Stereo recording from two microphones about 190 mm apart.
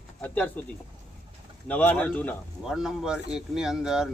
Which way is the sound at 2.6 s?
Centre (ahead or behind).